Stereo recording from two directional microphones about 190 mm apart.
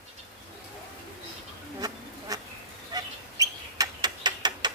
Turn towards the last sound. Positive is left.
turn(degrees=-20)  # may be behind; listen again after turning